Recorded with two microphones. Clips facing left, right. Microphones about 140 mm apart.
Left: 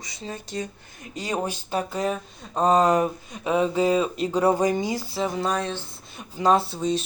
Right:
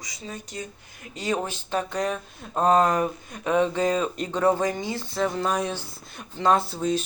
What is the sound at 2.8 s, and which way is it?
Speech, 10° left (ahead or behind).